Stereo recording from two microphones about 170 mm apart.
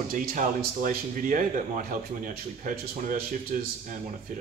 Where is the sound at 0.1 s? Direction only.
55° right (ahead or behind).